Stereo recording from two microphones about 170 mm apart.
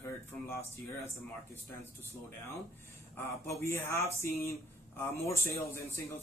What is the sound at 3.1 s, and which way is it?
Speech, 15° left (ahead or behind).